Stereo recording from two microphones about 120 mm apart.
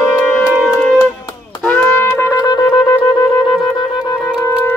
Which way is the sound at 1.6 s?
15° left (ahead or behind).